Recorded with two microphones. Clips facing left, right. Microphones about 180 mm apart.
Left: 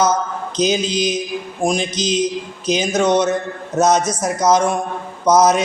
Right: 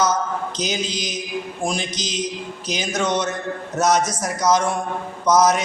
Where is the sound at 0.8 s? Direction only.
20° right (ahead or behind).